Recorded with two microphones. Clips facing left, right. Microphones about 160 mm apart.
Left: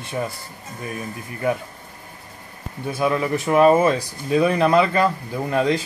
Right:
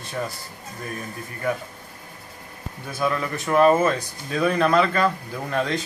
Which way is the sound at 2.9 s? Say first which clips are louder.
Left 4 dB; 20° left (ahead or behind).